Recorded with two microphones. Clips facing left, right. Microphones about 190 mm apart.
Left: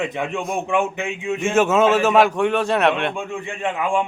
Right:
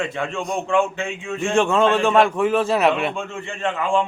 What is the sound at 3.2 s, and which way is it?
Speech, 15° left (ahead or behind).